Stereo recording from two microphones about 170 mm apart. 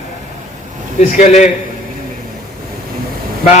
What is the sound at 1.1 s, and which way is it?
Speech, 40° left (ahead or behind).